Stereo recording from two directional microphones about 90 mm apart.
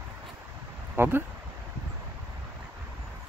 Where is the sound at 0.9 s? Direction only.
25° right (ahead or behind).